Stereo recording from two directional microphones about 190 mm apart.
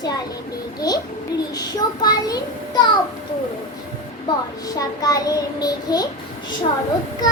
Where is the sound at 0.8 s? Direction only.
20° left (ahead or behind).